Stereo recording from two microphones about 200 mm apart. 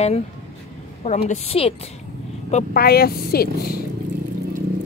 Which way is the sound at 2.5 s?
50° left (ahead or behind).